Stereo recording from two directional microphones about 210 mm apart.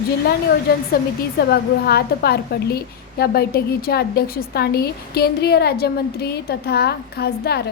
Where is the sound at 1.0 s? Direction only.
45° left (ahead or behind).